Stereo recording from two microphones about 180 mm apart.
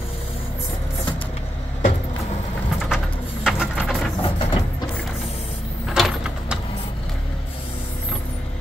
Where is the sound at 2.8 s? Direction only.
5° right (ahead or behind).